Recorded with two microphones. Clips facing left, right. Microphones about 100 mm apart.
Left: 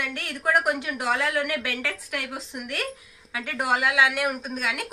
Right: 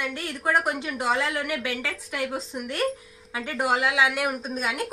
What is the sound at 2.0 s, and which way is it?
A woman's voice, 25° right (ahead or behind).